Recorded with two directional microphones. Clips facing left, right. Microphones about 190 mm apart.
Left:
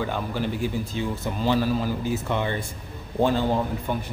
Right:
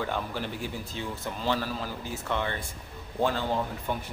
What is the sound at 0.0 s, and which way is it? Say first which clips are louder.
A man's voice: left 4 dB; 5° left (ahead or behind).